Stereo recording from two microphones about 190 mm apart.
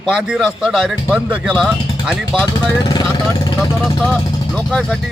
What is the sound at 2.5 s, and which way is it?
Speech, 20° left (ahead or behind).